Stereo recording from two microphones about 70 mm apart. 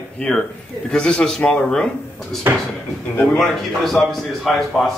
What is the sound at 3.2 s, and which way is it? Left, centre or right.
Speech, centre.